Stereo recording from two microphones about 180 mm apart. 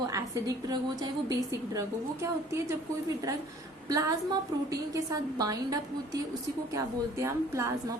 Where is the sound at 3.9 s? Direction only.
20° right (ahead or behind).